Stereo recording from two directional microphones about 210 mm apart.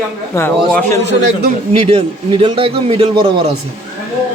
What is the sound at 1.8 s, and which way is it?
A man's voice, 25° right (ahead or behind).